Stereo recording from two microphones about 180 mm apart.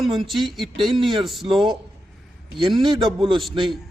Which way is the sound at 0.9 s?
25° right (ahead or behind).